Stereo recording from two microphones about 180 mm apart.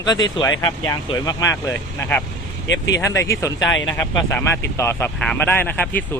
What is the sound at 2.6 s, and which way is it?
Speech, 85° left.